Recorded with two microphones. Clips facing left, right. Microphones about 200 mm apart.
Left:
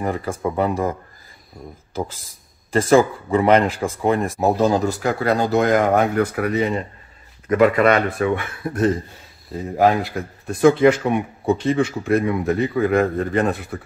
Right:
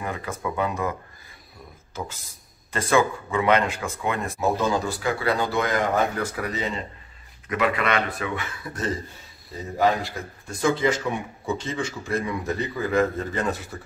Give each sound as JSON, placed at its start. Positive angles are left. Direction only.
{"t": 0.0, "sound": "speech", "side_deg": 35}
{"t": 2.7, "sound": "speech", "side_deg": 35}
{"t": 7.4, "sound": "speech", "side_deg": 45}